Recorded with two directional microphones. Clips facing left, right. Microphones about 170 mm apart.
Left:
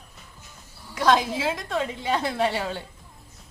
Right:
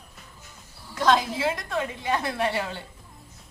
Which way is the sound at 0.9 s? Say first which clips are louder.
Left 1 dB; 20° left (ahead or behind).